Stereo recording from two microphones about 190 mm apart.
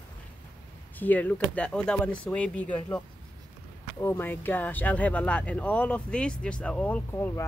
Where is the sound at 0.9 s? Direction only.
10° left (ahead or behind).